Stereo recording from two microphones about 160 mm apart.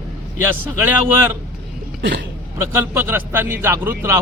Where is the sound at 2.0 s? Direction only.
90° right.